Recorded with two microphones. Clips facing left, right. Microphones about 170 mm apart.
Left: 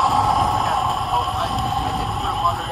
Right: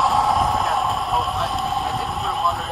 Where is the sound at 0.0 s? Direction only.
Centre (ahead or behind).